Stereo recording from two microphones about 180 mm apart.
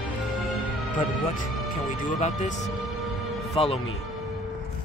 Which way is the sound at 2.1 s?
40° left (ahead or behind).